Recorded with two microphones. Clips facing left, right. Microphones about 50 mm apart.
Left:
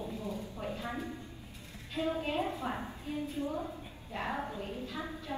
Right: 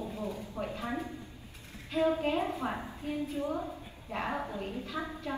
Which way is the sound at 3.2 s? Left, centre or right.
Right.